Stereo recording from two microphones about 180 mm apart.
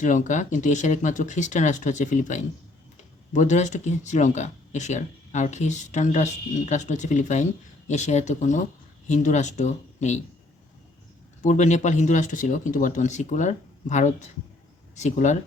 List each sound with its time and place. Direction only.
0.0 s speech: 45° left (ahead or behind)
11.4 s speech: 40° left (ahead or behind)